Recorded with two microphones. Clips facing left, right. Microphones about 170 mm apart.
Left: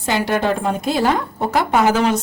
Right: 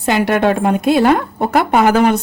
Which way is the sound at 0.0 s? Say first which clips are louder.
Right 5 dB; 65° right (ahead or behind).